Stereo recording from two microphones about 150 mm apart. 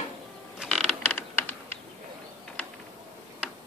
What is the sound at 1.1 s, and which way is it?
Typing, 15° left (ahead or behind).